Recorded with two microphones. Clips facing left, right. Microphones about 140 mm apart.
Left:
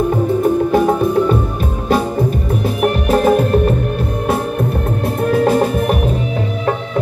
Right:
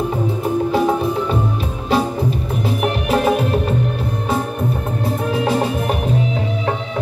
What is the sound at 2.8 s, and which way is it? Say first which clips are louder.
Music: left 4 dB; 45° left (ahead or behind).